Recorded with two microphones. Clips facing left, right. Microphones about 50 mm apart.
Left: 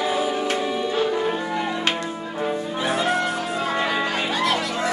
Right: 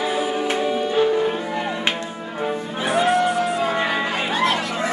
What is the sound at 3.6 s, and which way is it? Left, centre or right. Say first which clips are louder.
Music: right 2 dB; centre.